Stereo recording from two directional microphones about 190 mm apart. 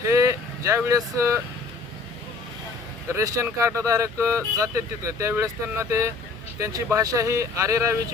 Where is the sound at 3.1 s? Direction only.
15° right (ahead or behind).